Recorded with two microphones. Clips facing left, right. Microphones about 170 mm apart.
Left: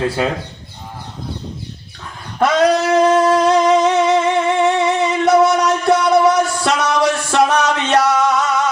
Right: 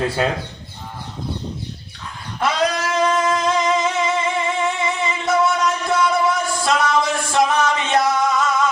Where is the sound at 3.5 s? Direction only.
70° left (ahead or behind).